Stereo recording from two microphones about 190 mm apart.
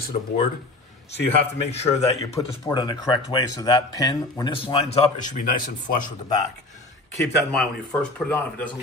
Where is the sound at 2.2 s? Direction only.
15° left (ahead or behind).